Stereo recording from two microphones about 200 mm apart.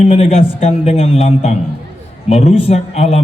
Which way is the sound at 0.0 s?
30° left (ahead or behind).